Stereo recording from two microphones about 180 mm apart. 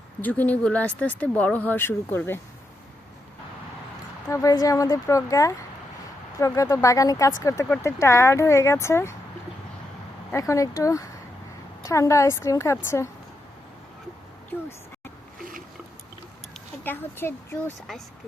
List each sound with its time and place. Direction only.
0.2 s speech: 10° left (ahead or behind)
4.3 s speech: 15° left (ahead or behind)
10.3 s speech: 15° left (ahead or behind)
14.5 s a sound: 10° left (ahead or behind)
16.8 s speech: 10° left (ahead or behind)